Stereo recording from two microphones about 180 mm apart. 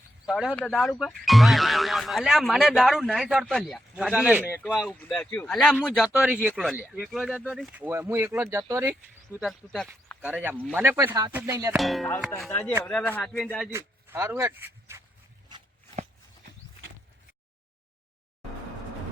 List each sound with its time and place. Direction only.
0.3 s speech: 5° right (ahead or behind)
4.6 s speech: centre (ahead or behind)
9.5 s speech: 5° left (ahead or behind)
10.2 s speech: 10° right (ahead or behind)
11.8 s speech: centre (ahead or behind)
13.7 s speech: 15° right (ahead or behind)